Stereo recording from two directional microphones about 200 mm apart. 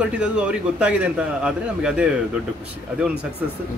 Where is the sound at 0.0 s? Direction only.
5° right (ahead or behind).